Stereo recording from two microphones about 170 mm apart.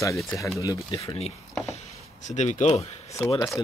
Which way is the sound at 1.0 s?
35° left (ahead or behind).